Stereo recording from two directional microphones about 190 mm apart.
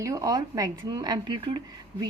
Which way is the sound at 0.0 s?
20° right (ahead or behind).